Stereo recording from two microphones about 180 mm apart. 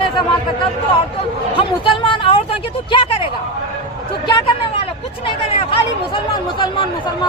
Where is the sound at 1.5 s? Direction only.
25° left (ahead or behind).